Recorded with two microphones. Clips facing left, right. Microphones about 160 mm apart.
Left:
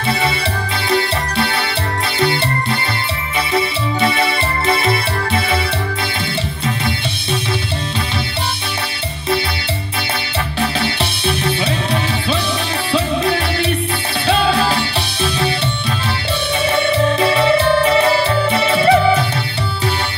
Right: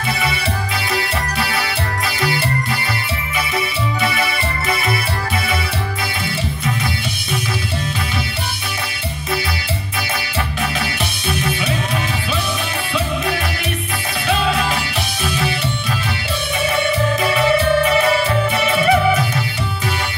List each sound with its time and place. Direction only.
0.9 s music: 30° left (ahead or behind)
3.5 s music: 30° left (ahead or behind)
10.6 s music: 30° left (ahead or behind)
16.7 s music: 30° left (ahead or behind)